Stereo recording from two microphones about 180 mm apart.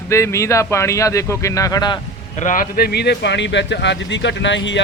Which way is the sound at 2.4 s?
45° left (ahead or behind).